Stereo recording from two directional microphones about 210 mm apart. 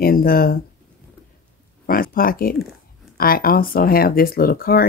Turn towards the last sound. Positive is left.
turn(degrees=45)  # may be behind; listen again after turning